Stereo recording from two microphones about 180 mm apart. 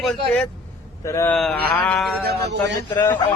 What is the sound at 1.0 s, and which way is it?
Speech, 15° left (ahead or behind).